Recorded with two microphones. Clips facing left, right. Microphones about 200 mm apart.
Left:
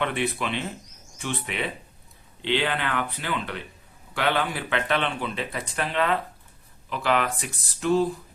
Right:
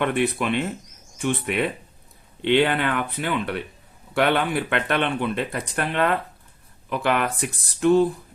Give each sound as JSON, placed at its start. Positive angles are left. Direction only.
{"t": 0.0, "sound": "speech", "side_deg": -50}